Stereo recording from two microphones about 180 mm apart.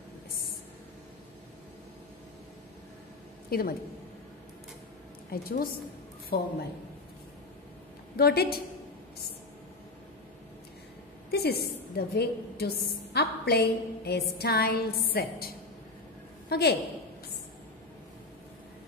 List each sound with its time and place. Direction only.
3.4 s a woman's voice: 55° left (ahead or behind)
5.3 s a woman's voice: 55° left (ahead or behind)
8.2 s a woman's voice: 60° left (ahead or behind)
11.2 s a woman's voice: 65° left (ahead or behind)